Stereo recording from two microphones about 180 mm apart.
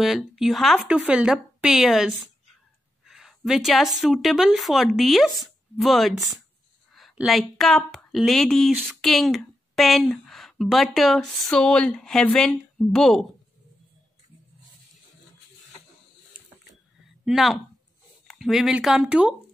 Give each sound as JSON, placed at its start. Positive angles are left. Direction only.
{"t": 0.0, "sound": "a woman's voice", "side_deg": 0}
{"t": 17.2, "sound": "speech", "side_deg": 0}